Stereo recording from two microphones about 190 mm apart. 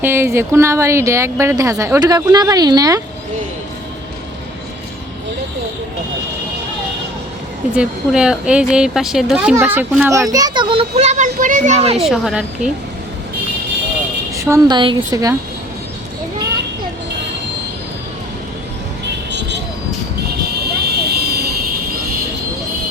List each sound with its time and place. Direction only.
0.0 s speech: 10° right (ahead or behind)
7.8 s a woman's voice: 5° right (ahead or behind); by 12.0 s 30° right (ahead or behind)
12.0 s a woman's voice: centre (ahead or behind)
14.5 s speech: 25° right (ahead or behind)
19.3 s vehicle: 65° right (ahead or behind)
20.6 s vehicle: 55° right (ahead or behind)